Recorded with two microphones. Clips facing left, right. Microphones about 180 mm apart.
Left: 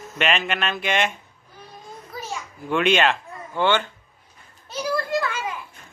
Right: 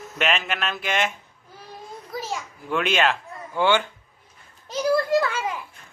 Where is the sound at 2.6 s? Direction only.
Centre (ahead or behind).